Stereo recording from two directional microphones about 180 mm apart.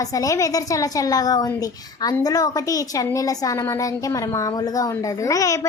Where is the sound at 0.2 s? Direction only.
20° left (ahead or behind).